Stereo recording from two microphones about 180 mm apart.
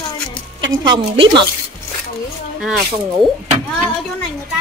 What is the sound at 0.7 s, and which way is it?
Speech, 25° right (ahead or behind).